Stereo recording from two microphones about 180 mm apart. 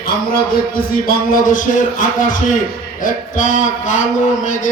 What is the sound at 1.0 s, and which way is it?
A man's voice, 50° left (ahead or behind).